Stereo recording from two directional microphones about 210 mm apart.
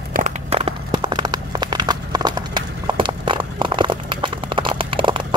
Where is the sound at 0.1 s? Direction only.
35° right (ahead or behind).